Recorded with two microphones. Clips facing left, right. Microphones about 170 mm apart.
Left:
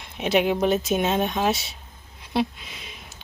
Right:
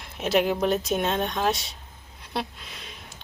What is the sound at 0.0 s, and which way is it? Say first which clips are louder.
Speech: left 1 dB; centre (ahead or behind).